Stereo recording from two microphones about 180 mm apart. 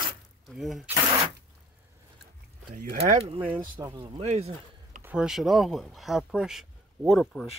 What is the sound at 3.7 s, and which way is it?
Speech, 25° right (ahead or behind).